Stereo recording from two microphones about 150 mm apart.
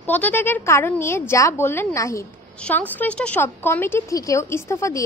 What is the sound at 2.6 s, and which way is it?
A woman's voice, 10° left (ahead or behind).